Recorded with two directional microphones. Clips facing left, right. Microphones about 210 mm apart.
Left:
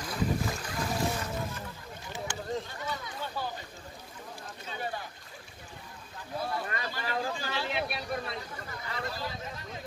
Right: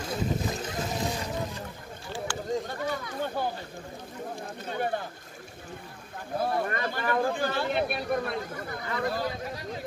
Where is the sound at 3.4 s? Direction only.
55° right (ahead or behind).